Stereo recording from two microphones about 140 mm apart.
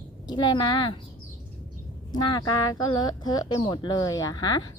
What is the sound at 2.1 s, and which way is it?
Speech, 30° left (ahead or behind).